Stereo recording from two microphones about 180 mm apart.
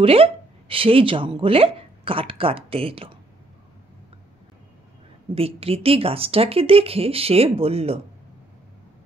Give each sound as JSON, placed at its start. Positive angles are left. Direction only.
{"t": 0.0, "sound": "speech", "side_deg": -30}
{"t": 5.3, "sound": "speech", "side_deg": -30}